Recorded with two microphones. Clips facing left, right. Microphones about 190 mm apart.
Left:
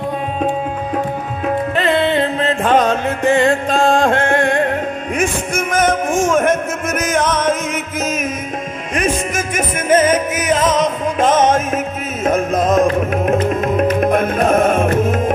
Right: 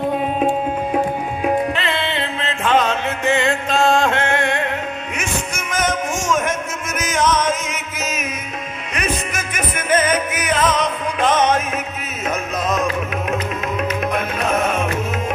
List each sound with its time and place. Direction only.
1.8 s music: 45° left (ahead or behind)